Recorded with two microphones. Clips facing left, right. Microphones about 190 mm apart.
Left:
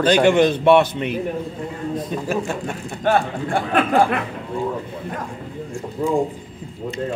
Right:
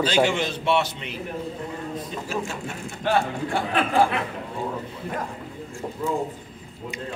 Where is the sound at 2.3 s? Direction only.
55° left (ahead or behind).